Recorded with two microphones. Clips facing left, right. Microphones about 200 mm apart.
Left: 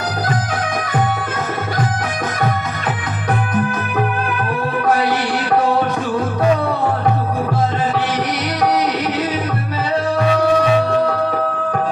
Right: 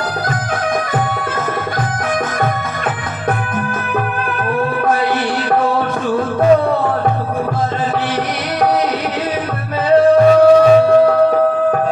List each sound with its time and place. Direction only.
10.2 s music: 40° right (ahead or behind)